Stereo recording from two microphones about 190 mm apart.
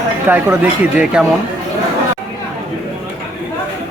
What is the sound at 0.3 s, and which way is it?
Speech, 10° right (ahead or behind).